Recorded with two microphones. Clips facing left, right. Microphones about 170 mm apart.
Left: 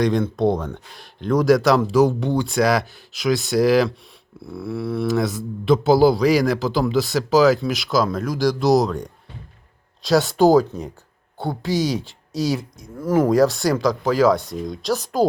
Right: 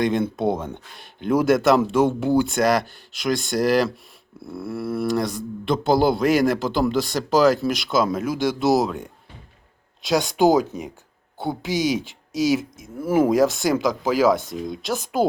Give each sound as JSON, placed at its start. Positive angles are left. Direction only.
{"t": 0.0, "sound": "speech", "side_deg": 0}
{"t": 12.8, "sound": "speech", "side_deg": -25}
{"t": 13.3, "sound": "speech", "side_deg": 0}
{"t": 14.1, "sound": "speech", "side_deg": -20}
{"t": 14.3, "sound": "speech", "side_deg": 0}